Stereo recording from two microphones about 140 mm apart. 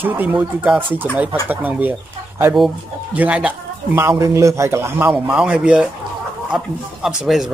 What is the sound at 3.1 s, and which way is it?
Speech, 10° right (ahead or behind).